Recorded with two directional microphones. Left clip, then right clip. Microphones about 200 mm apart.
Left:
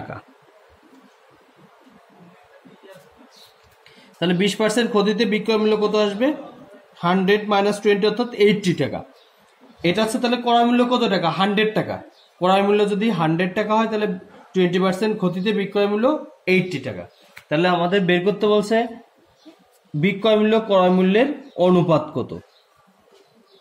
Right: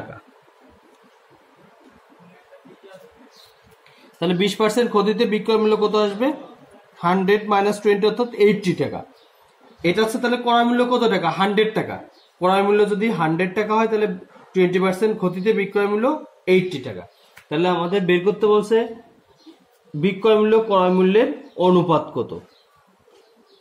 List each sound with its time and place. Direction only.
4.2 s speech: 10° left (ahead or behind)
17.5 s speech: 30° left (ahead or behind)
20.1 s speech: 40° left (ahead or behind)
21.6 s speech: 45° left (ahead or behind)